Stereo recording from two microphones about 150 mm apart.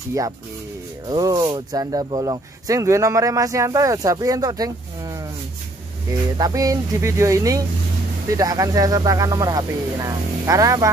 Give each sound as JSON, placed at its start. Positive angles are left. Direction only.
{"t": 1.0, "sound": "speech", "side_deg": -25}